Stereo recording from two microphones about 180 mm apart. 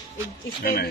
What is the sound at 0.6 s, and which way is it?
Speech, 60° left (ahead or behind).